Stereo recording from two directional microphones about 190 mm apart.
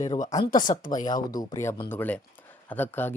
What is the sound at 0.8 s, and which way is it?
Speech, 45° left (ahead or behind).